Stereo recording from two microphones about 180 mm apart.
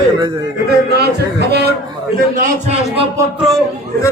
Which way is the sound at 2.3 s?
40° right (ahead or behind).